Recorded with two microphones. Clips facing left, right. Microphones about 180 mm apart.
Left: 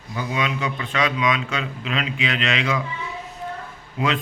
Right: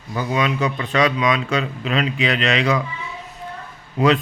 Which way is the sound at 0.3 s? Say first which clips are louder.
Right 5 dB; 40° right (ahead or behind).